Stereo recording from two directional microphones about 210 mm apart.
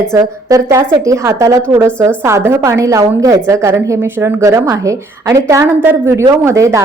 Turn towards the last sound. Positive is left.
turn(degrees=-15)  # may be behind; listen again after turning